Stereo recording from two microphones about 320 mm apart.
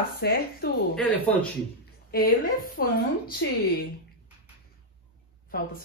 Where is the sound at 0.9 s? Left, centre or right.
Centre.